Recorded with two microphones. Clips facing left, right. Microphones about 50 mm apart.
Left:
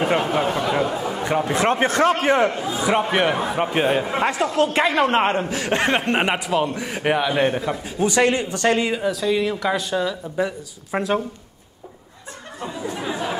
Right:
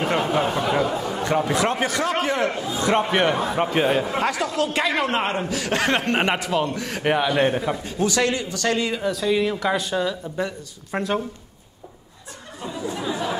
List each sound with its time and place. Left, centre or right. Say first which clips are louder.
0.0 s a sound: left 1 dB; centre
1.5 s a man's voice: left 3 dB; left
2.8 s a man's voice: even; centre
4.1 s a man's voice: left 2 dB; left
6.1 s a man's voice: left 1 dB; centre
8.0 s a man's voice: left 4 dB; left
9.0 s a man's voice: left 1 dB; centre